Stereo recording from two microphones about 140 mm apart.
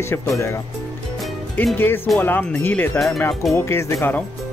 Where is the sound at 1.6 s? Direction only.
15° left (ahead or behind).